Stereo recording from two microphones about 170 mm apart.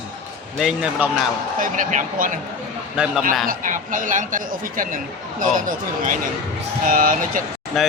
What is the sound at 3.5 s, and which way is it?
Speech, 50° right (ahead or behind).